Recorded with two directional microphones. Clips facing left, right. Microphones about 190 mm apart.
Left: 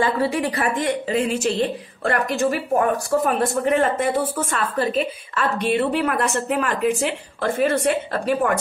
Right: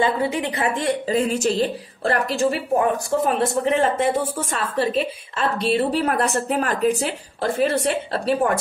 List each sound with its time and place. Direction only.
0.0 s speech: 20° right (ahead or behind)
0.7 s a woman's voice: 35° right (ahead or behind)